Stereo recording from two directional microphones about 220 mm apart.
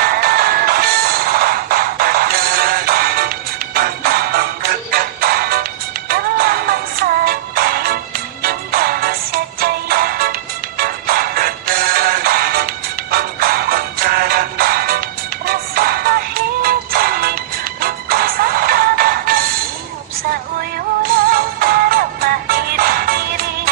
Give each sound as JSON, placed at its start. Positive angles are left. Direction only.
{"t": 0.0, "sound": "music", "side_deg": -45}
{"t": 21.0, "sound": "music", "side_deg": -40}